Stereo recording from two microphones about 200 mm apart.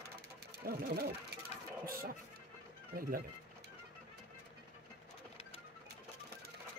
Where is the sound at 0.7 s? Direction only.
50° right (ahead or behind).